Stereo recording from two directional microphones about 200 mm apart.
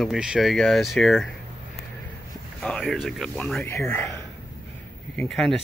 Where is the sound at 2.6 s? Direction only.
Centre (ahead or behind).